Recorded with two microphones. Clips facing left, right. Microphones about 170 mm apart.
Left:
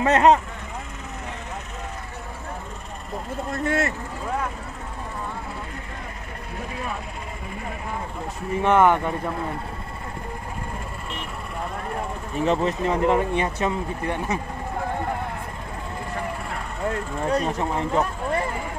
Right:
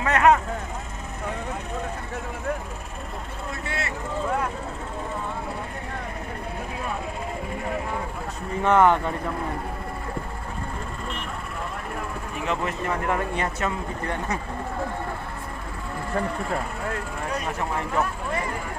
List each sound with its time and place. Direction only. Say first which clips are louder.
0.0 s speech: left 2 dB; 25° left (ahead or behind)
3.6 s speech: left 10 dB; 45° left (ahead or behind)
8.6 s speech: left 1 dB; 15° left (ahead or behind)
12.4 s speech: left 6 dB; 30° left (ahead or behind)
17.3 s speech: left 5 dB; 30° left (ahead or behind)